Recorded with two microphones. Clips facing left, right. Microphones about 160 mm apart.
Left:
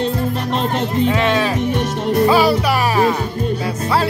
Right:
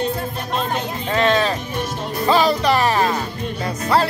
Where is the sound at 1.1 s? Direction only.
5° left (ahead or behind).